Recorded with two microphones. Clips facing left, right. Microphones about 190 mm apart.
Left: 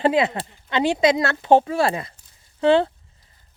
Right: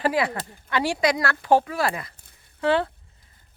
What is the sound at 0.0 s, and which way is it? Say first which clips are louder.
Speech: left 4 dB; 20° left (ahead or behind).